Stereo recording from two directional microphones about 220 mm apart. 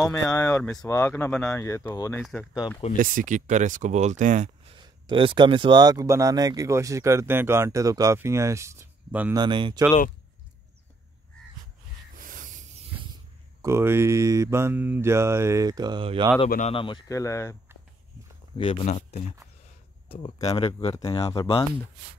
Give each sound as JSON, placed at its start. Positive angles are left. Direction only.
{"t": 0.0, "sound": "speech", "side_deg": 5}
{"t": 0.3, "sound": "speech", "side_deg": 15}
{"t": 3.0, "sound": "speech", "side_deg": -40}
{"t": 4.7, "sound": "speech", "side_deg": -20}
{"t": 9.4, "sound": "speech", "side_deg": -20}
{"t": 12.2, "sound": "a sound", "side_deg": -40}
{"t": 13.6, "sound": "speech", "side_deg": -10}
{"t": 16.4, "sound": "speech", "side_deg": 35}
{"t": 16.7, "sound": "speech", "side_deg": 20}
{"t": 18.6, "sound": "speech", "side_deg": 25}
{"t": 20.9, "sound": "speech", "side_deg": 15}